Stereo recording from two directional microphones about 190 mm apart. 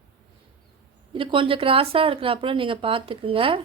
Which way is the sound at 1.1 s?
25° right (ahead or behind).